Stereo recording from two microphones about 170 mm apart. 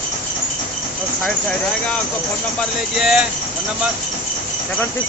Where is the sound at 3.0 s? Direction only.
5° right (ahead or behind).